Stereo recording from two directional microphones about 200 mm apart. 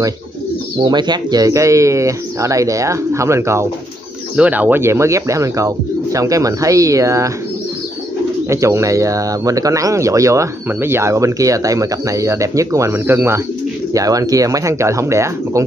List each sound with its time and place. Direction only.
0.7 s speech: 20° right (ahead or behind)
8.5 s speech: 15° right (ahead or behind)